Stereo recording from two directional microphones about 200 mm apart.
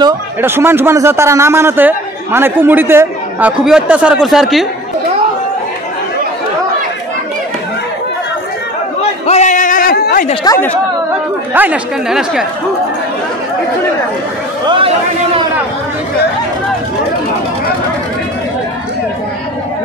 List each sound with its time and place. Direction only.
0.4 s a man's voice: 10° right (ahead or behind)
9.2 s a sound: 35° left (ahead or behind)
10.4 s a woman's voice: 15° left (ahead or behind)
11.5 s a woman's voice: 10° right (ahead or behind)